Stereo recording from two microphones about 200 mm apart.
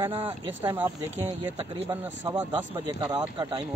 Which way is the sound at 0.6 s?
10° right (ahead or behind).